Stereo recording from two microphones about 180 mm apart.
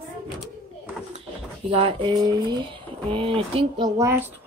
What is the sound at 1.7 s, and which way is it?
Speech, 30° right (ahead or behind).